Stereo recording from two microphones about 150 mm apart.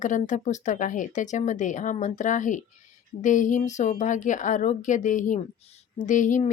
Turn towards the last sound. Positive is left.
turn(degrees=60)  # may be behind; listen again after turning